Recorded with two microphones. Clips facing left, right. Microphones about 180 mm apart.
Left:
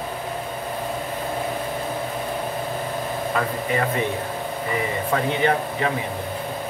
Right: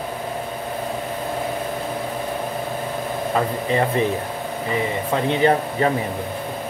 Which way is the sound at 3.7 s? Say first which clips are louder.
Right 4 dB; 30° right (ahead or behind).